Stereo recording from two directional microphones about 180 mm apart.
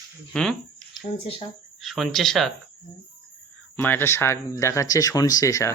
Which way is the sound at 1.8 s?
Centre (ahead or behind).